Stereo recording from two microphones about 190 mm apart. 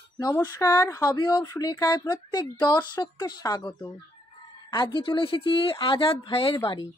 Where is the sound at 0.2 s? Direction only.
20° left (ahead or behind).